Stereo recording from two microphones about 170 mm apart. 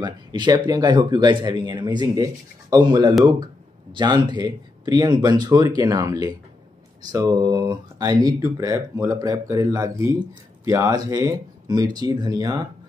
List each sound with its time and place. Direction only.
0.0 s speech: 25° right (ahead or behind)